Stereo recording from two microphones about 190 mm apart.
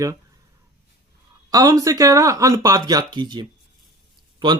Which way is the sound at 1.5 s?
20° right (ahead or behind).